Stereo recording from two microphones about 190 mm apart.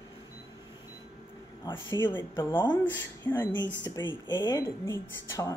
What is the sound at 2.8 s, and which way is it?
Speech, 10° left (ahead or behind).